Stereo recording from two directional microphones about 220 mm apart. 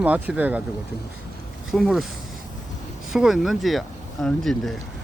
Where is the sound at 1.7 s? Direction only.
Centre (ahead or behind).